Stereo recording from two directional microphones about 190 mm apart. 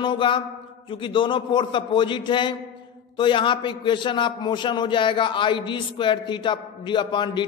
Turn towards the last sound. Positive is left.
turn(degrees=25)  # may be behind; listen again after turning